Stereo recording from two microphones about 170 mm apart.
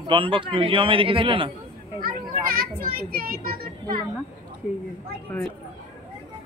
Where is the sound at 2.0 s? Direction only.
60° right (ahead or behind).